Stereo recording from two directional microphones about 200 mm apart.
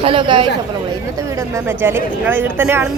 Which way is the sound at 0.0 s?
25° right (ahead or behind).